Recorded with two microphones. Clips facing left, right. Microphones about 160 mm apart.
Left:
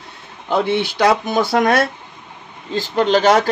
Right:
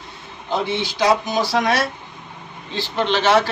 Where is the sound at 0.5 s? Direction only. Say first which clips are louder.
Left 5 dB; 60° left (ahead or behind).